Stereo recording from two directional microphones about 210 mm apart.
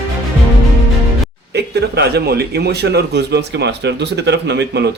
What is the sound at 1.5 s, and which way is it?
Speech, 50° right (ahead or behind).